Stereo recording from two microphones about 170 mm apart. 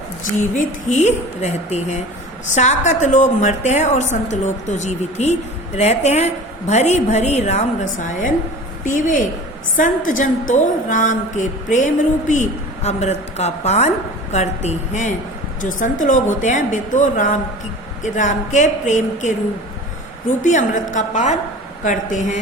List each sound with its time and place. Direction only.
0.5 s a woman's voice: 45° left (ahead or behind)
20.4 s a woman's voice: 45° left (ahead or behind)